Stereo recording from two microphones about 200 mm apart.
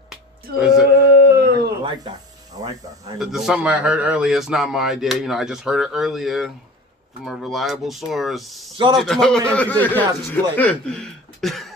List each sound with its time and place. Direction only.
0.8 s a sound: 50° right (ahead or behind)
1.8 s speech: 25° right (ahead or behind)
3.2 s a man's voice: centre (ahead or behind)
8.7 s a man's voice: 25° right (ahead or behind)
9.0 s a man's voice: 5° left (ahead or behind)